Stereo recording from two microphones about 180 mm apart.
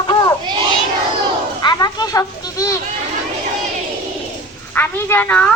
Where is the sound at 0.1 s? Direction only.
20° left (ahead or behind).